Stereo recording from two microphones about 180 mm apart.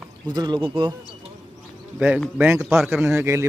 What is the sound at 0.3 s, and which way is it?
Speech, 25° right (ahead or behind).